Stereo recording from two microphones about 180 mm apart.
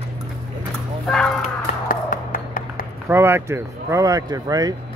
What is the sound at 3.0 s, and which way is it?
Speech, 15° right (ahead or behind).